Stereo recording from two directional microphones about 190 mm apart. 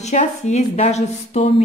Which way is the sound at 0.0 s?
40° left (ahead or behind).